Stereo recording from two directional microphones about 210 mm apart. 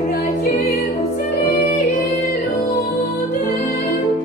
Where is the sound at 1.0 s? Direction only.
30° left (ahead or behind).